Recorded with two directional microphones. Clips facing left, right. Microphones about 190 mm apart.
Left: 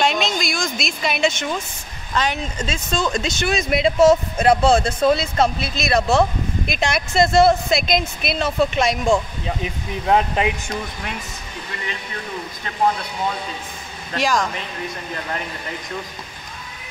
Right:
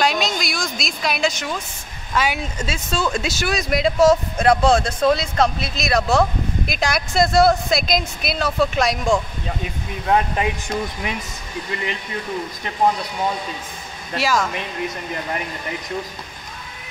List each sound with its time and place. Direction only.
0.0 s a woman's voice: centre (ahead or behind)
10.0 s speech: 25° left (ahead or behind)
14.1 s speech: 5° right (ahead or behind)